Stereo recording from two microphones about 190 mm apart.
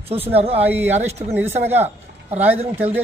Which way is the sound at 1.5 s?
35° right (ahead or behind).